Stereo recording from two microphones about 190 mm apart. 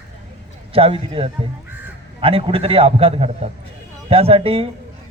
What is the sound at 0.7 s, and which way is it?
Speech, 30° right (ahead or behind).